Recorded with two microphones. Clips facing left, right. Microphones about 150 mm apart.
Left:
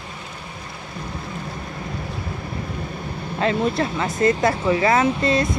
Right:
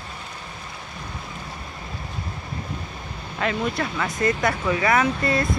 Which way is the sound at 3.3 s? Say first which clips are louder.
Left 4 dB; 30° left (ahead or behind).